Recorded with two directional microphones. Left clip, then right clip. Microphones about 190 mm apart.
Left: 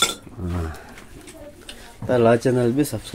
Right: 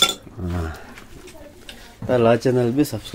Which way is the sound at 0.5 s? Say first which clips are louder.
Right 2 dB; 5° right (ahead or behind).